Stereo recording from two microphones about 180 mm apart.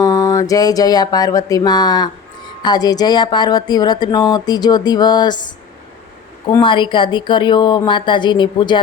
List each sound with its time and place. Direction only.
0.0 s a sound: 20° left (ahead or behind)
2.6 s speech: 25° left (ahead or behind)
6.5 s speech: 25° left (ahead or behind)